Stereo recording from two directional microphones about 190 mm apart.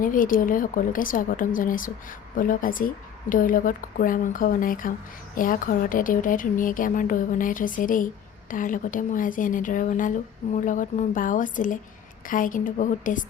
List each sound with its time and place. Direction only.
0.0 s speech: 45° left (ahead or behind)